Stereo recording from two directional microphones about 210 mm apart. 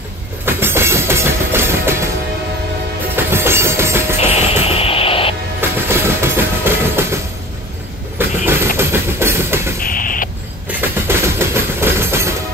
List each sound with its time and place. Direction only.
0.5 s train: 10° right (ahead or behind)
3.3 s music: 10° right (ahead or behind)
4.3 s music: 30° left (ahead or behind)
4.6 s vehicle: 25° left (ahead or behind)
5.6 s train: 10° right (ahead or behind)
8.2 s train: 10° right (ahead or behind)
9.8 s a sound: 40° left (ahead or behind)
10.7 s a sound: 10° right (ahead or behind)